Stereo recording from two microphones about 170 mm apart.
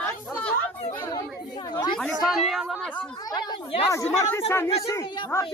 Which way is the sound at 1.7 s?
25° left (ahead or behind).